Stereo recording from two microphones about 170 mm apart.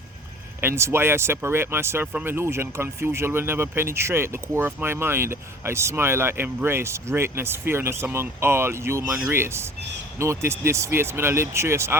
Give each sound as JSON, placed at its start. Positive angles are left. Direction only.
{"t": 0.6, "sound": "speech", "side_deg": -15}